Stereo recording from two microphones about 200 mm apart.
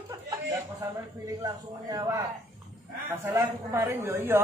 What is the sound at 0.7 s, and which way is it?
A man's voice, 15° right (ahead or behind).